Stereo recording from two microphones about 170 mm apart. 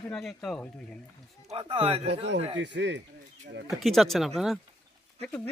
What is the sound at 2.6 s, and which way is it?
Speech, 90° right.